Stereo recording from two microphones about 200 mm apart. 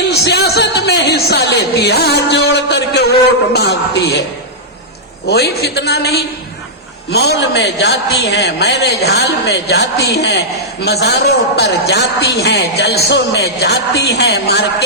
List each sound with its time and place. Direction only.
0.1 s a sound: 55° left (ahead or behind)
3.5 s a man's voice: 55° left (ahead or behind)
5.3 s a man's voice: 55° left (ahead or behind)